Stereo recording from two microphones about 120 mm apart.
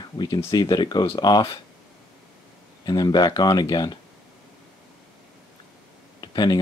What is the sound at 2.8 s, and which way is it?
Speech, 35° left (ahead or behind).